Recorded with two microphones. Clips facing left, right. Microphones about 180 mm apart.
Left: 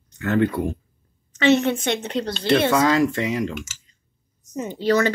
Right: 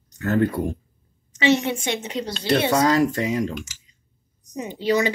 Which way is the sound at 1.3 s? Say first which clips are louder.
Left 2 dB; 10° right (ahead or behind).